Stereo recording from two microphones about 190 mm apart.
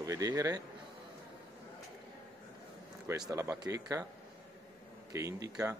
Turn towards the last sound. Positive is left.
turn(degrees=-20)  # may be behind; listen again after turning